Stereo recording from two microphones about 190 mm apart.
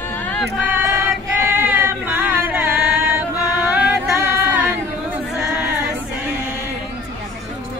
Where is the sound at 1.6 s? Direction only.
10° right (ahead or behind).